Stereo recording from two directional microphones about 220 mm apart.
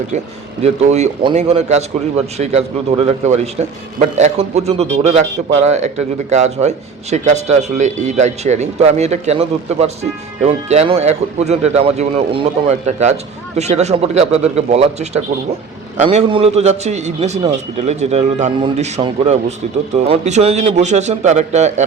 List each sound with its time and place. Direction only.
0.6 s speech: 30° right (ahead or behind)